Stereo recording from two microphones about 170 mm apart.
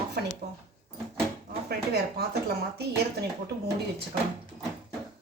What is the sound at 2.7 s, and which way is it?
Speech, 70° right (ahead or behind).